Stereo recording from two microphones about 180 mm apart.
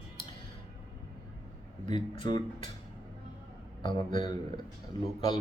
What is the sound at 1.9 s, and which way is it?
Speech, 25° left (ahead or behind).